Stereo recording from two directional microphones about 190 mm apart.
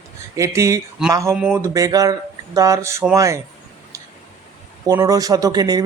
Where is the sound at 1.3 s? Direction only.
Centre (ahead or behind).